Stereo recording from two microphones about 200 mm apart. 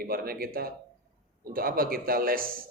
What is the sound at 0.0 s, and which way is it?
Speech, 50° right (ahead or behind).